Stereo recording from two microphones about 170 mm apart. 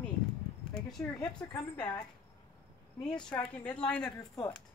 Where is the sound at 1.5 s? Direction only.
10° left (ahead or behind).